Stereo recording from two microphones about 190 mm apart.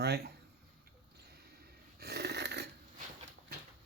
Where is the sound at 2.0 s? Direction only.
60° right (ahead or behind).